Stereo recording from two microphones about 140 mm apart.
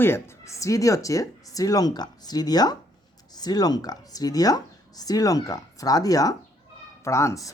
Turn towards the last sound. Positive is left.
turn(degrees=20)  # may be behind; listen again after turning